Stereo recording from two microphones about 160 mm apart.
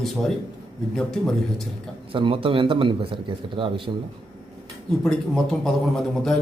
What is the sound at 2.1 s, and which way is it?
A man's voice, 35° right (ahead or behind).